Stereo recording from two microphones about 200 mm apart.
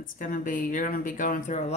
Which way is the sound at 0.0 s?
40° left (ahead or behind).